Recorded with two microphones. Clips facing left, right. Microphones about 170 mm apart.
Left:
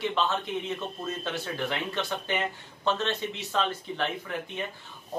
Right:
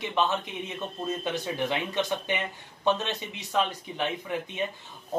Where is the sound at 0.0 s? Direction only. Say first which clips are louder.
Right 1 dB; 15° right (ahead or behind).